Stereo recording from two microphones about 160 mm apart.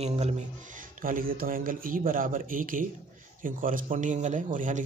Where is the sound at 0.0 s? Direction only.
40° right (ahead or behind).